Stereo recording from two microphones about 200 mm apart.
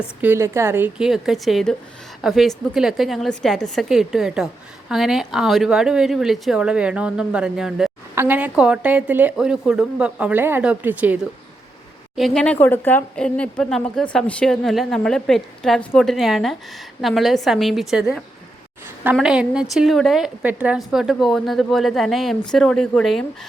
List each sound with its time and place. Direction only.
0.2 s a woman's voice: 10° right (ahead or behind)